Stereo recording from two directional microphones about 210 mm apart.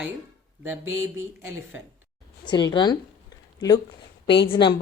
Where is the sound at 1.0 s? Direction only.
10° right (ahead or behind).